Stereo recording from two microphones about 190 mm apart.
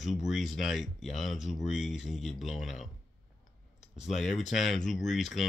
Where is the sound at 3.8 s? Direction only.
35° left (ahead or behind).